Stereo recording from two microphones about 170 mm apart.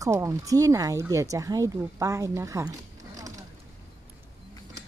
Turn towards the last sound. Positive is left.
turn(degrees=-20)  # may be behind; listen again after turning